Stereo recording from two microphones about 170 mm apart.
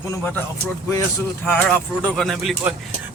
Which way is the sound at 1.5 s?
10° left (ahead or behind).